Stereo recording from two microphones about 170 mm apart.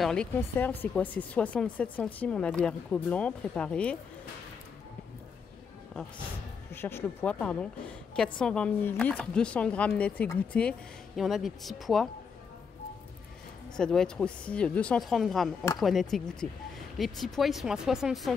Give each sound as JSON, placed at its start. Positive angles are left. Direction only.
{"t": 0.0, "sound": "speech", "side_deg": 5}
{"t": 6.7, "sound": "speech", "side_deg": 15}
{"t": 13.7, "sound": "speech", "side_deg": 5}